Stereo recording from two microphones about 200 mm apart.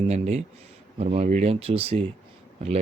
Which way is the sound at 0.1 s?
35° right (ahead or behind).